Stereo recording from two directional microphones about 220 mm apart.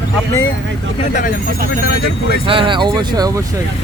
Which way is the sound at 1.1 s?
35° left (ahead or behind).